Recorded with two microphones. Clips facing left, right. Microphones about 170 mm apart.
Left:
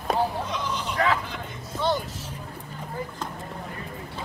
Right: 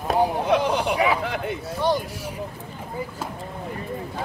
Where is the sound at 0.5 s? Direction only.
65° right (ahead or behind).